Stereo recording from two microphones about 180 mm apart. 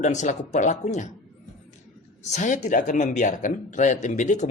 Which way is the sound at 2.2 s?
40° left (ahead or behind).